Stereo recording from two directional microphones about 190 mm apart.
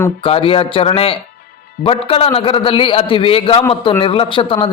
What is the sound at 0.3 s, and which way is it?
A man's voice, 30° left (ahead or behind).